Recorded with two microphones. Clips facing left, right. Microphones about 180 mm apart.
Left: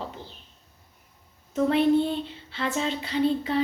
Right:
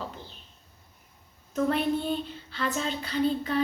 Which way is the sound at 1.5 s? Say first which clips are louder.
Left 5 dB; 25° left (ahead or behind).